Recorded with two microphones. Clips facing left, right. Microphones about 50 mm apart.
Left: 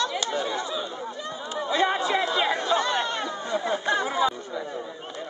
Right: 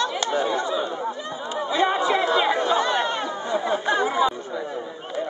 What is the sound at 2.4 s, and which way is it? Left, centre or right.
Chatter, centre.